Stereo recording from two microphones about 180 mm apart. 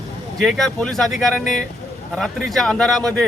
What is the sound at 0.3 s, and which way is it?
Speech, centre (ahead or behind).